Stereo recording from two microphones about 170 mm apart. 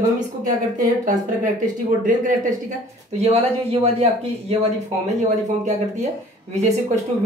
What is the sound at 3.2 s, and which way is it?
Speech, 40° right (ahead or behind).